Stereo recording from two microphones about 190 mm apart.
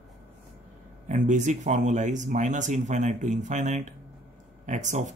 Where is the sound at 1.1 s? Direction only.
40° right (ahead or behind).